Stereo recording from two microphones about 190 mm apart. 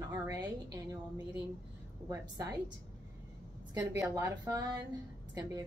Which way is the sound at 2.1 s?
20° right (ahead or behind).